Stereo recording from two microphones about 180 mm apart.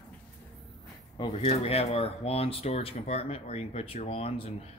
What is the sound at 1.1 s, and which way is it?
Speech, 30° left (ahead or behind).